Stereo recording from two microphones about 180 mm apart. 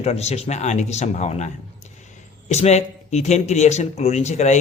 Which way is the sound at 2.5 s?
40° left (ahead or behind).